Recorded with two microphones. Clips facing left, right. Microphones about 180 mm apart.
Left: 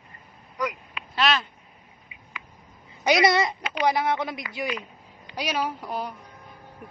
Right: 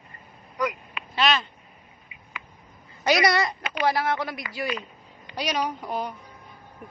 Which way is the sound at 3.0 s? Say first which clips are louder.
Left 1 dB; 20° left (ahead or behind).